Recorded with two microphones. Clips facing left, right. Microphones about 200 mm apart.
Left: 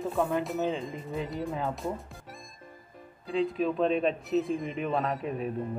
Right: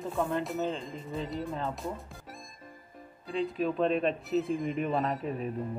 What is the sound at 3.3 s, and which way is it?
Speech, centre (ahead or behind).